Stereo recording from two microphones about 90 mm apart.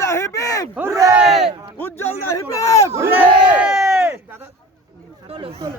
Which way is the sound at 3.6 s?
5° right (ahead or behind).